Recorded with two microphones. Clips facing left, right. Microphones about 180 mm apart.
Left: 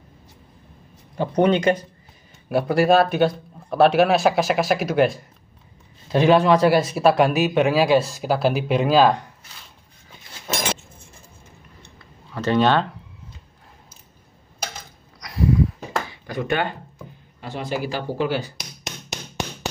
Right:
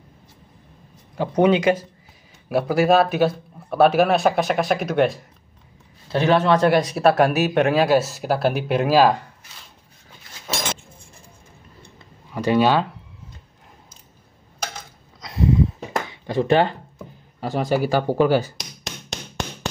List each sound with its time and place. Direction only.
1.1 s speech: 5° right (ahead or behind)
6.0 s speech: 15° left (ahead or behind); by 9.2 s 5° right (ahead or behind)
11.8 s clicking: 10° right (ahead or behind)
15.1 s a sound: 25° right (ahead or behind)
17.4 s speech: 40° right (ahead or behind)